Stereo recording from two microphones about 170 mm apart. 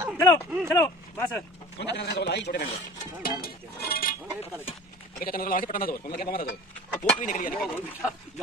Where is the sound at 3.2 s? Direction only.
60° left (ahead or behind).